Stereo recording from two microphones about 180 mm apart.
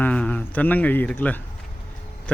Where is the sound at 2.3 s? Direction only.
5° left (ahead or behind).